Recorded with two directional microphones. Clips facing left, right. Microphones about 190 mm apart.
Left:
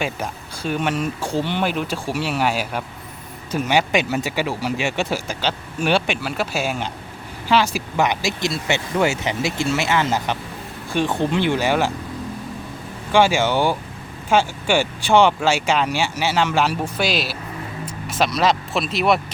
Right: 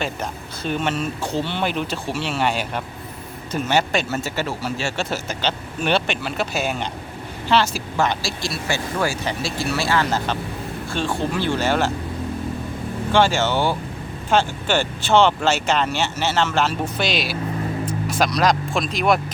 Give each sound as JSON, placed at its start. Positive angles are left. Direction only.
{"t": 0.0, "sound": "speech", "side_deg": 10}
{"t": 13.1, "sound": "speech", "side_deg": 10}